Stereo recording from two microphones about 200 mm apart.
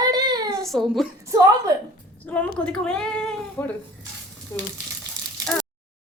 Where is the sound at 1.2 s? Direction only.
15° right (ahead or behind).